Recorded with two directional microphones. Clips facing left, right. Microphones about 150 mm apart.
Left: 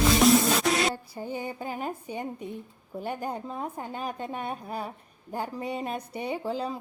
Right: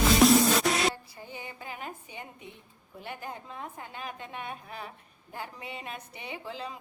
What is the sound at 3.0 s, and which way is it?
Speech, 45° left (ahead or behind).